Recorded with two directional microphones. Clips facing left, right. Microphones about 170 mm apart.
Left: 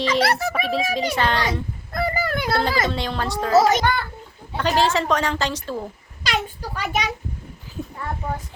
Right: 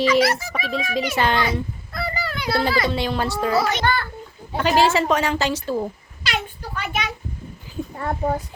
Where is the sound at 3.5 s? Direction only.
45° left (ahead or behind).